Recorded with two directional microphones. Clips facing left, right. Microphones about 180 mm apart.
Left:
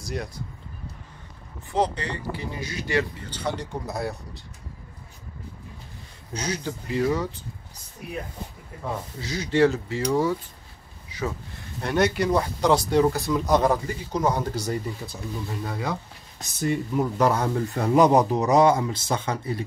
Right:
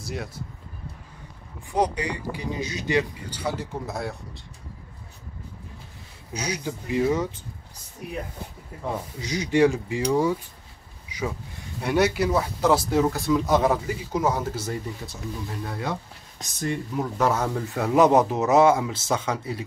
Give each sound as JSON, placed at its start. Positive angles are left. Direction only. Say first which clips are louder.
{"t": 0.0, "sound": "speech", "louder": "left 1 dB", "side_deg": -5}
{"t": 1.7, "sound": "speech", "louder": "right 1 dB", "side_deg": -10}
{"t": 6.3, "sound": "speech", "louder": "even", "side_deg": -10}
{"t": 9.2, "sound": "speech", "louder": "right 1 dB", "side_deg": -15}
{"t": 11.1, "sound": "a sound", "louder": "even", "side_deg": -15}
{"t": 11.8, "sound": "speech", "louder": "right 1 dB", "side_deg": -5}